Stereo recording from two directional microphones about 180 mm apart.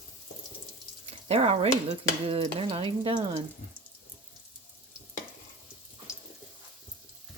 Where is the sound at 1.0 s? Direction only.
35° right (ahead or behind).